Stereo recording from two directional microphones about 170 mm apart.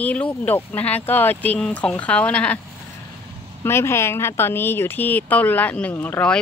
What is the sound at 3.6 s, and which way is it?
Speech, 15° left (ahead or behind).